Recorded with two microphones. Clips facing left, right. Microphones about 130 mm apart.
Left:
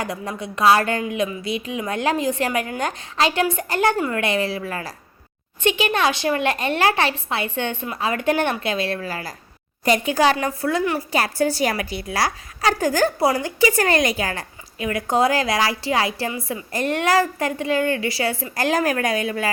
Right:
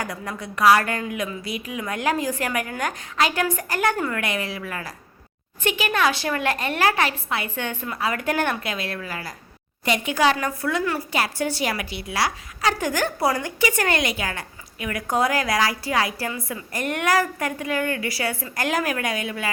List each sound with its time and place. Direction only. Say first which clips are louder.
0.0 s a woman's voice: left 3 dB; 25° left (ahead or behind)